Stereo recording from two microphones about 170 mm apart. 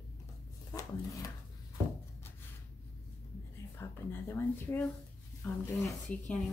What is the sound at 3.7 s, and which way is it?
A woman's voice, 15° left (ahead or behind).